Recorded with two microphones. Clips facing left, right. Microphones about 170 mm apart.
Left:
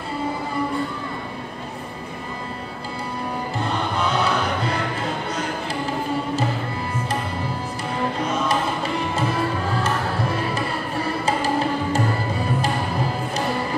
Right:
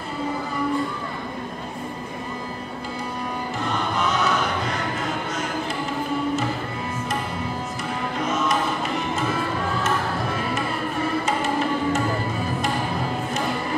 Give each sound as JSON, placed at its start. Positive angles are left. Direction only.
{"t": 11.2, "sound": "music", "side_deg": 35}